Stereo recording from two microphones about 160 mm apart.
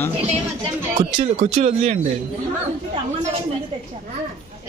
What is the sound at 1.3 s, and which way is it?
Speech, 45° right (ahead or behind).